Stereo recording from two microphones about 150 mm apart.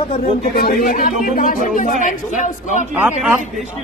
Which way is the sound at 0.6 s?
85° left.